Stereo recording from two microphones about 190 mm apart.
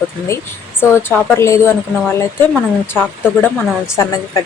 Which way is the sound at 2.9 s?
10° left (ahead or behind).